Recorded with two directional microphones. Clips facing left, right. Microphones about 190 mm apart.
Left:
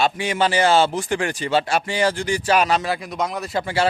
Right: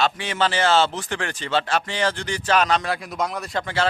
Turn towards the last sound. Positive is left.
turn(degrees=10)  # may be behind; listen again after turning